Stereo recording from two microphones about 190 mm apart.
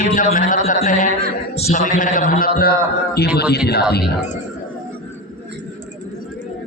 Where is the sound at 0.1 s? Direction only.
40° left (ahead or behind).